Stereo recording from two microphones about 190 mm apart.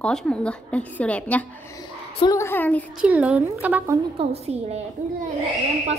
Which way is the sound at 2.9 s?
5° right (ahead or behind).